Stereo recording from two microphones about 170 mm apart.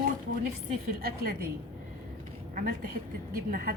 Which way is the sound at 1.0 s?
60° right (ahead or behind).